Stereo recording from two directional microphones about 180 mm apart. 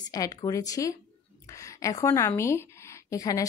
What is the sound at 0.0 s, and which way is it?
Speech, 20° left (ahead or behind).